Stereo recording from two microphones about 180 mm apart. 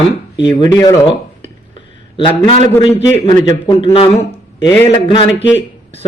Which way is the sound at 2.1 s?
30° left (ahead or behind).